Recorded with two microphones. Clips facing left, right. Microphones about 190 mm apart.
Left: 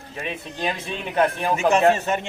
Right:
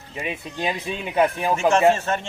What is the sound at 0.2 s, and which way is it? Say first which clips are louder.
Speech: right 1 dB; 10° right (ahead or behind).